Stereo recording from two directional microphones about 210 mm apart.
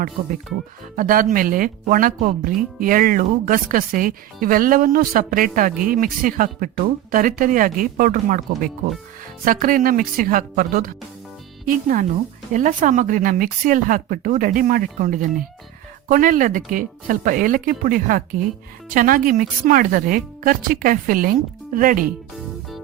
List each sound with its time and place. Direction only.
0.9 s a woman's voice: 40° right (ahead or behind)